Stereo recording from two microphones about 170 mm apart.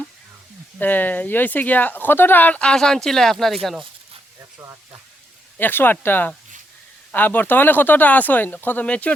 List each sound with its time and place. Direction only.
0.8 s speech: 10° left (ahead or behind)
4.5 s speech: 15° right (ahead or behind)
5.5 s speech: 10° left (ahead or behind)